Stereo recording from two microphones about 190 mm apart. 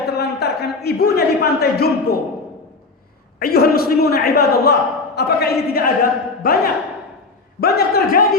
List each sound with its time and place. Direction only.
0.2 s a man's voice: 60° left (ahead or behind)
3.4 s a man's voice: 55° left (ahead or behind)
7.6 s a man's voice: 55° left (ahead or behind)